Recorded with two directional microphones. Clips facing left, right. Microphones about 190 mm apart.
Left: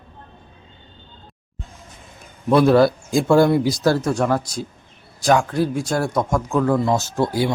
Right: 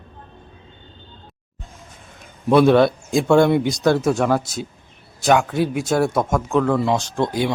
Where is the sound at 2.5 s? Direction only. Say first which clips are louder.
Right 1 dB; centre (ahead or behind).